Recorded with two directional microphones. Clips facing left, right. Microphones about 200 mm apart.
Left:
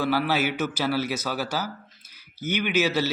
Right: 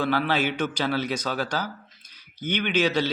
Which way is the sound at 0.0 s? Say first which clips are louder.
Even; 10° left (ahead or behind).